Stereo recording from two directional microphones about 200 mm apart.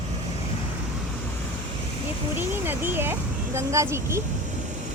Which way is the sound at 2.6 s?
10° right (ahead or behind).